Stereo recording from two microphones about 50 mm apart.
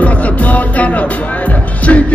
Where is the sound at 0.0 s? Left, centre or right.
Left.